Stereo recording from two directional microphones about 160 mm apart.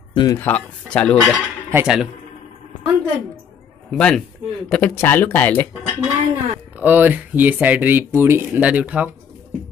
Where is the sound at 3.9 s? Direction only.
5° left (ahead or behind).